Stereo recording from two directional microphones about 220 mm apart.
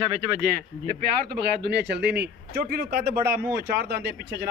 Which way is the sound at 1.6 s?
50° right (ahead or behind).